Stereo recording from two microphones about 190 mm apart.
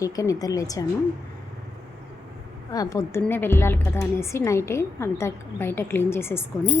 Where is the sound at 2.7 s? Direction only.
20° left (ahead or behind).